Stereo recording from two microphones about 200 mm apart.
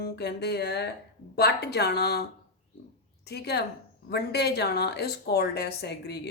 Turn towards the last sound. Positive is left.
turn(degrees=55)  # may be behind; listen again after turning